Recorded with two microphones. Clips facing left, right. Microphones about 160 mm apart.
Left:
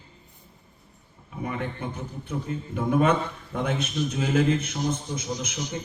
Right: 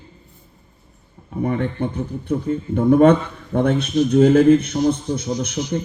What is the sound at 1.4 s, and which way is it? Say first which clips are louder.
Speech: right 10 dB; 55° right (ahead or behind).